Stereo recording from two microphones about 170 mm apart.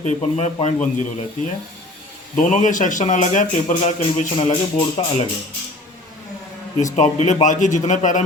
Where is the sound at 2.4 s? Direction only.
50° left (ahead or behind); by 5.1 s 30° left (ahead or behind).